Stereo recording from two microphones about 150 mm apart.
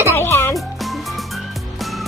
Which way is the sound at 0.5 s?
Centre (ahead or behind).